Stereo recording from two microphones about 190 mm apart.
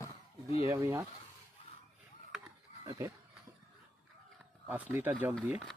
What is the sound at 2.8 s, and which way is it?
Speech, 15° right (ahead or behind).